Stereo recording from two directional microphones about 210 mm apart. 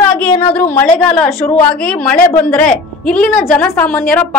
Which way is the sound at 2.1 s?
45° left (ahead or behind).